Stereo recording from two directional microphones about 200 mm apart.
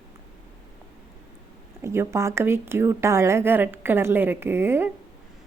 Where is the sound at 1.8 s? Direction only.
15° right (ahead or behind).